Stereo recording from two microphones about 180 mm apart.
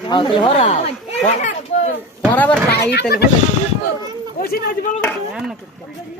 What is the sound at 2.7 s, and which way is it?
Speech, 60° left (ahead or behind).